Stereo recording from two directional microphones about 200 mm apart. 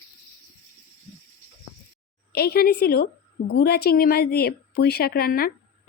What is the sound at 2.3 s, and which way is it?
A woman's voice, 50° left (ahead or behind).